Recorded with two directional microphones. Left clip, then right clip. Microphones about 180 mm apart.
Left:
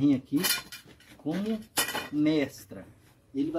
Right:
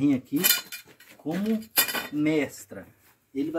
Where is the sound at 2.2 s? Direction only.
Centre (ahead or behind).